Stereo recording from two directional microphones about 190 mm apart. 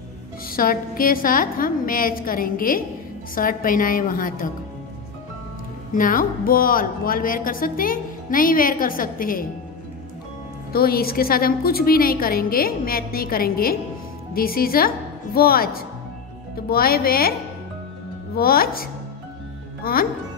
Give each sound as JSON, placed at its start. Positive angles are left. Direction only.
{"t": 0.5, "sound": "speech", "side_deg": 50}
{"t": 5.9, "sound": "speech", "side_deg": 45}
{"t": 10.7, "sound": "speech", "side_deg": 55}
{"t": 18.3, "sound": "speech", "side_deg": 50}